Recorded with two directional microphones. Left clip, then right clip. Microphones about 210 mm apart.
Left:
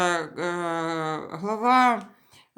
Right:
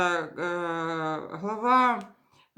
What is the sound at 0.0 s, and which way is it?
Speech, 45° left (ahead or behind).